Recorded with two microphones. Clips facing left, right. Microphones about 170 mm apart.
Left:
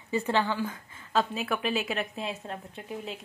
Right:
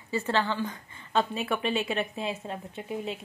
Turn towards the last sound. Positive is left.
turn(degrees=0)  # may be behind; listen again after turning